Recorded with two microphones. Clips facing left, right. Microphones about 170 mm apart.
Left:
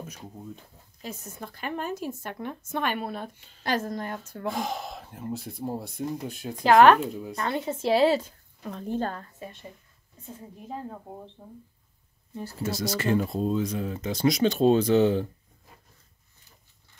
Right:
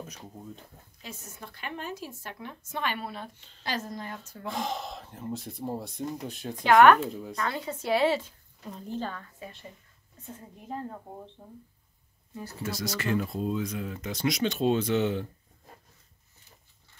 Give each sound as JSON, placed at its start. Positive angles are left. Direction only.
{"t": 1.0, "sound": "speech", "side_deg": 40}
{"t": 4.5, "sound": "speech", "side_deg": 5}
{"t": 6.6, "sound": "speech", "side_deg": 30}
{"t": 7.1, "sound": "speech", "side_deg": 5}
{"t": 7.3, "sound": "speech", "side_deg": 25}
{"t": 8.6, "sound": "a woman's voice", "side_deg": 65}
{"t": 9.1, "sound": "speech", "side_deg": 30}
{"t": 10.2, "sound": "speech", "side_deg": 10}
{"t": 12.4, "sound": "speech", "side_deg": 25}